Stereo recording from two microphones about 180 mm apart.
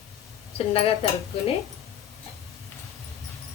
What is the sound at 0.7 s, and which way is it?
Speech, 35° left (ahead or behind).